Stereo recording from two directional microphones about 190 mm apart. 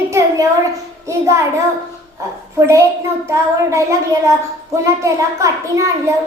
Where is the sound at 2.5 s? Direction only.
15° right (ahead or behind).